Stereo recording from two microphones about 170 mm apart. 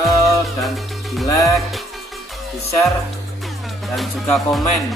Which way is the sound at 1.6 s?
Centre (ahead or behind).